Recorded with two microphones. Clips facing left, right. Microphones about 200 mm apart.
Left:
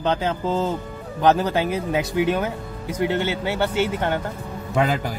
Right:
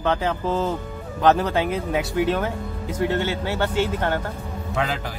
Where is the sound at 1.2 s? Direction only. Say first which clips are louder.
Even; 15° left (ahead or behind).